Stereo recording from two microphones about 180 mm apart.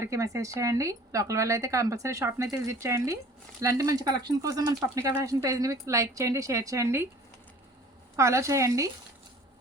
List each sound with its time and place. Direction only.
0.0 s speech: 15° right (ahead or behind)
8.1 s speech: 15° right (ahead or behind)